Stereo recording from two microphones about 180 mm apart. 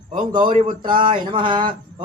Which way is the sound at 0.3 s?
25° right (ahead or behind).